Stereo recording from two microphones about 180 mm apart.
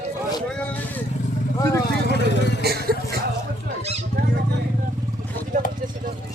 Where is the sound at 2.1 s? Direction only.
75° left (ahead or behind).